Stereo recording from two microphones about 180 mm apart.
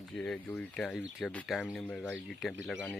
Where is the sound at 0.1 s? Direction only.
5° left (ahead or behind).